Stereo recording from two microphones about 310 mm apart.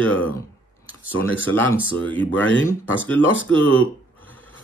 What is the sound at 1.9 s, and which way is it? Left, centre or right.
Speech, centre.